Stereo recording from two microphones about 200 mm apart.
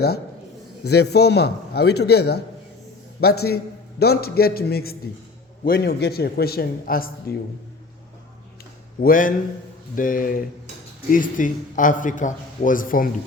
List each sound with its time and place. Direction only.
0.9 s a man's voice: 55° left (ahead or behind)
9.0 s a man's voice: 45° left (ahead or behind)